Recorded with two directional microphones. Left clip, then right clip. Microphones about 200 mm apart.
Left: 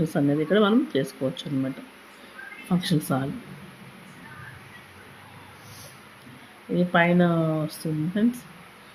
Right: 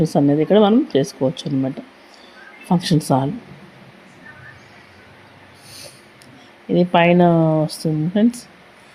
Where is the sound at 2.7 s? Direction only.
25° right (ahead or behind).